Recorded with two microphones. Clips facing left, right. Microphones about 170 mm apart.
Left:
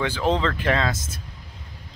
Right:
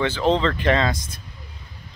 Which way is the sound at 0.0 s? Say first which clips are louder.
Right 3 dB; 10° left (ahead or behind).